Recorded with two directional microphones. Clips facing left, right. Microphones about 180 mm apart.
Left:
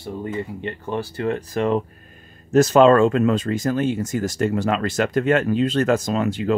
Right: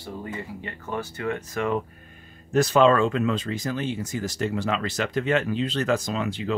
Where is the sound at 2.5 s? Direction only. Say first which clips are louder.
Left 5 dB; 45° left (ahead or behind).